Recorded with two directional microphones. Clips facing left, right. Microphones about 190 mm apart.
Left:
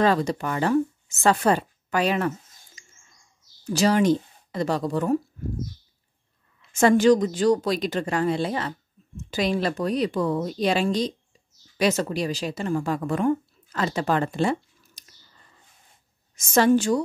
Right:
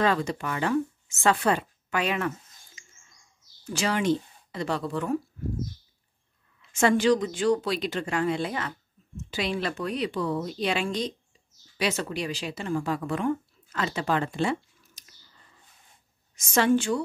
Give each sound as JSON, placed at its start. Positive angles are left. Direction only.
{"t": 0.0, "sound": "speech", "side_deg": 40}
{"t": 6.7, "sound": "a woman's voice", "side_deg": 40}
{"t": 16.3, "sound": "speech", "side_deg": 40}